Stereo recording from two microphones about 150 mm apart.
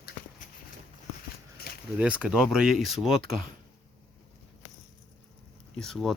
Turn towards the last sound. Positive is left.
turn(degrees=0)  # may be behind; listen again after turning